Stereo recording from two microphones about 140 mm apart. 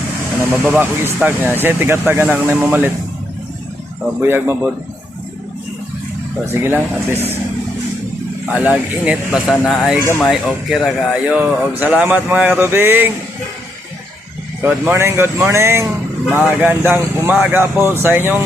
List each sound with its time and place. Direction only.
0.6 s speech: 15° right (ahead or behind)
4.2 s speech: 15° right (ahead or behind)
6.5 s speech: 15° right (ahead or behind)
8.4 s speech: 10° right (ahead or behind)
10.1 s speech: 10° left (ahead or behind)
10.7 s speech: centre (ahead or behind)
14.6 s speech: 15° right (ahead or behind)